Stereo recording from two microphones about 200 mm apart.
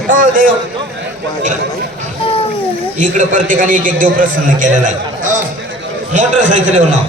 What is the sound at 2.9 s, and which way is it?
A man's voice, 40° right (ahead or behind).